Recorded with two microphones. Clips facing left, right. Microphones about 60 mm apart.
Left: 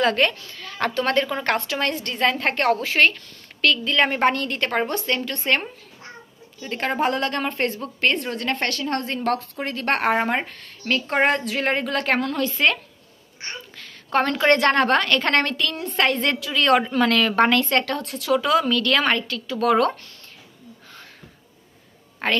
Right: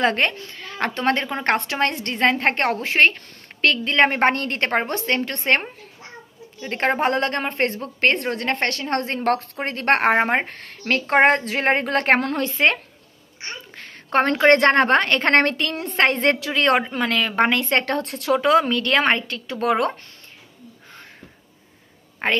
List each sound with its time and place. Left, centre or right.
0.0 s a woman's voice: right
13.7 s a woman's voice: right
22.2 s a woman's voice: right